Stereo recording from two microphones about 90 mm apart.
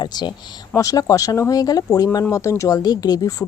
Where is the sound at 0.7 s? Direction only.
40° left (ahead or behind).